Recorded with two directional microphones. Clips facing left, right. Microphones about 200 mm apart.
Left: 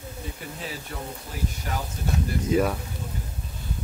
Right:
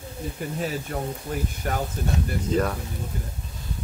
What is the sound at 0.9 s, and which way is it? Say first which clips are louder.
Speech: right 7 dB; 50° right (ahead or behind).